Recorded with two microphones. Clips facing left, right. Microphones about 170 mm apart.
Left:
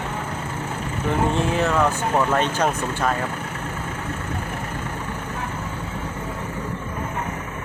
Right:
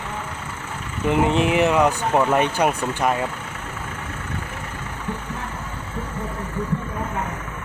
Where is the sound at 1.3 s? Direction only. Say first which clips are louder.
Right 3 dB; 15° right (ahead or behind).